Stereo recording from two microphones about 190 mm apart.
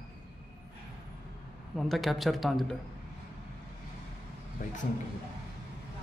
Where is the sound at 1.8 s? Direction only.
Centre (ahead or behind).